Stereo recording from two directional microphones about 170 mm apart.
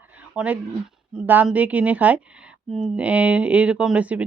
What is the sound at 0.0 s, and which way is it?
A woman's voice, 10° right (ahead or behind).